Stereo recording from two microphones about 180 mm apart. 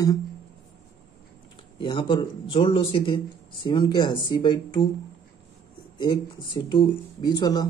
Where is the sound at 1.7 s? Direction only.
25° left (ahead or behind).